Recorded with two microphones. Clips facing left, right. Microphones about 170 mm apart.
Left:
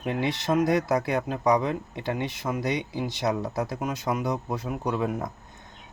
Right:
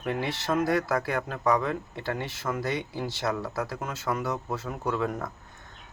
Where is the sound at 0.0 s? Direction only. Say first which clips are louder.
Left 2 dB; 15° left (ahead or behind).